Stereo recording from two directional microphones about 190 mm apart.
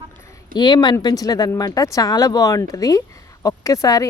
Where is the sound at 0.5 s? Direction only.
20° left (ahead or behind).